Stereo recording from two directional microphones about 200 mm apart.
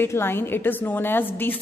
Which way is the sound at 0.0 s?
10° left (ahead or behind).